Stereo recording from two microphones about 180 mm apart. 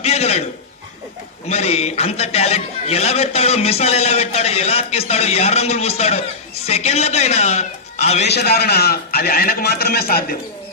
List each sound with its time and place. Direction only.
0.0 s a man's voice: 35° left (ahead or behind)
1.5 s a man's voice: 35° left (ahead or behind)
8.3 s a man's voice: 60° left (ahead or behind)